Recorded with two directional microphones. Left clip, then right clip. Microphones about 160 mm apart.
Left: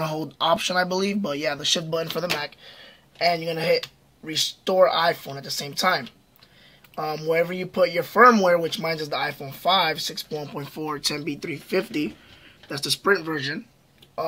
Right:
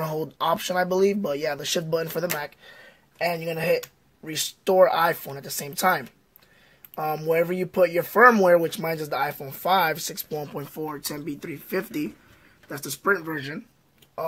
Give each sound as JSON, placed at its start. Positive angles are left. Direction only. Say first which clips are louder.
{"t": 0.0, "sound": "speech", "louder": "left 1 dB", "side_deg": -35}
{"t": 7.0, "sound": "speech", "louder": "even", "side_deg": -45}
{"t": 11.2, "sound": "speech", "louder": "left 4 dB", "side_deg": -15}
{"t": 12.6, "sound": "speech", "louder": "left 3 dB", "side_deg": 0}